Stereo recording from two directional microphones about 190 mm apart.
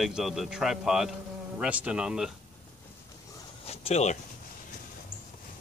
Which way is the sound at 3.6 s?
35° left (ahead or behind).